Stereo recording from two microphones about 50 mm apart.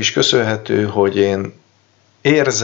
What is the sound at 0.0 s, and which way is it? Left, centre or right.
Speech, centre.